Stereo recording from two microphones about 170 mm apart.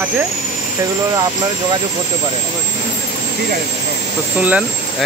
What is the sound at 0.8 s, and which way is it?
Speech, 20° right (ahead or behind).